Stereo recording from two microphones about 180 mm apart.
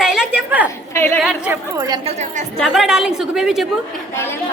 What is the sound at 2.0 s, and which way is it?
Speech, 35° right (ahead or behind).